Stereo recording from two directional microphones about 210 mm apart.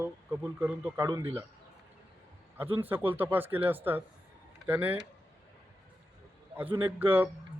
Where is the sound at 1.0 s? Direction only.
20° right (ahead or behind).